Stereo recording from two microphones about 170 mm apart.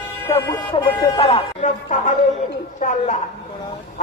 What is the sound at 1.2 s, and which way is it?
A man's voice, 40° left (ahead or behind).